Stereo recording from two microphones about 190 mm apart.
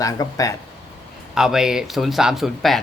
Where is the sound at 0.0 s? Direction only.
20° left (ahead or behind).